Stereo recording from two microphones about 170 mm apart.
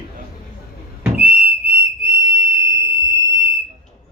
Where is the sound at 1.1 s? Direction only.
10° right (ahead or behind).